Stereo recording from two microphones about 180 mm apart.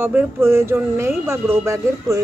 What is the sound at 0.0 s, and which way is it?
Speech, 10° right (ahead or behind).